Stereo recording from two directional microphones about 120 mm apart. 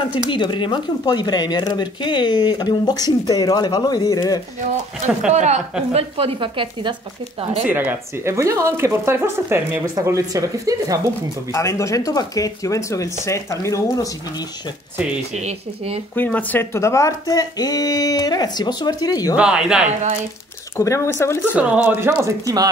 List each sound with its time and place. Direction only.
0.3 s speech: 40° left (ahead or behind)
5.0 s speech: 75° right (ahead or behind)
6.1 s speech: 50° right (ahead or behind)
7.6 s speech: 15° right (ahead or behind)
11.5 s speech: 25° left (ahead or behind)
15.3 s speech: 60° right (ahead or behind)
16.2 s speech: 15° left (ahead or behind); by 19.3 s 30° left (ahead or behind)
19.3 s speech: 10° right (ahead or behind)
20.7 s speech: 25° left (ahead or behind)
21.4 s speech: 10° right (ahead or behind)
22.4 s speech: 30° right (ahead or behind)